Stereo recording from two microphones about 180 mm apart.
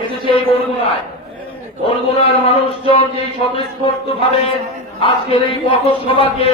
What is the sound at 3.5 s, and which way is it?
A man's voice, 30° left (ahead or behind).